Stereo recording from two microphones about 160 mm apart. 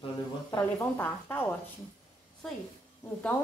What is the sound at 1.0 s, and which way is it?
Speech, 10° left (ahead or behind).